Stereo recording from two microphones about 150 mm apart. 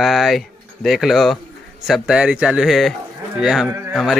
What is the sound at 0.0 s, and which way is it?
Speech, centre (ahead or behind).